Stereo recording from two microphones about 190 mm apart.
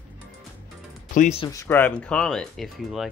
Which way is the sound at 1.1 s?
40° left (ahead or behind).